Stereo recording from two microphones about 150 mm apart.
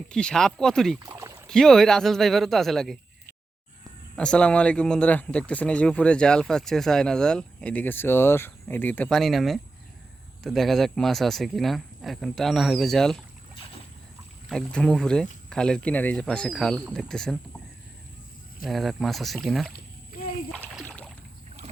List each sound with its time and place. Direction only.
0.1 s speech: 5° left (ahead or behind)
0.9 s rowboat: 20° right (ahead or behind)
1.5 s speech: 5° left (ahead or behind)
4.1 s speech: 5° left (ahead or behind)
14.5 s speech: 5° left (ahead or behind)
18.6 s speech: centre (ahead or behind)
19.7 s splash: 75° left (ahead or behind)
20.8 s rowboat: 5° left (ahead or behind)